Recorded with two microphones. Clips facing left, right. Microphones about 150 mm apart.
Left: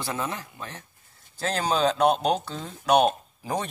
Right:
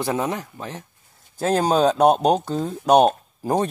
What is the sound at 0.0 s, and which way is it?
Speech, 40° right (ahead or behind).